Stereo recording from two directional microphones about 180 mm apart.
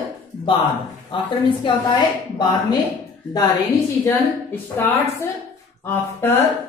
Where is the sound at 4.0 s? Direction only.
10° left (ahead or behind).